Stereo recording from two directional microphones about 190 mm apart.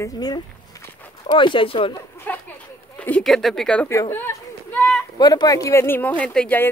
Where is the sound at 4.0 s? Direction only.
15° left (ahead or behind).